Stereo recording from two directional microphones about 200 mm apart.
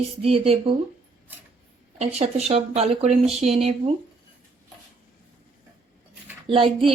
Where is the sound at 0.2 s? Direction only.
30° right (ahead or behind).